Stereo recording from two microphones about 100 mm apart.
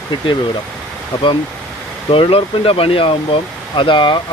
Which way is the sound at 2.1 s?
65° left (ahead or behind).